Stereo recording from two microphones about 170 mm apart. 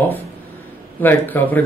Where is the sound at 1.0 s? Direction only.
10° left (ahead or behind).